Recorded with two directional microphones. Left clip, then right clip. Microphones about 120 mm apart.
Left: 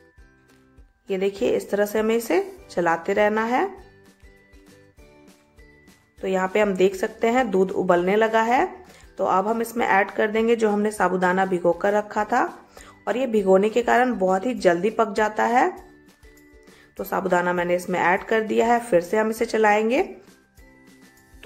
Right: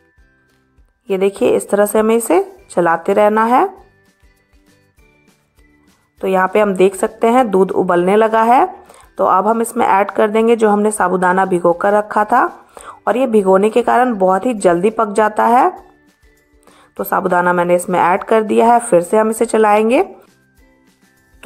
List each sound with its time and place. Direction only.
1.0 s speech: 45° right (ahead or behind)
6.1 s speech: 40° right (ahead or behind)
16.9 s speech: 40° right (ahead or behind)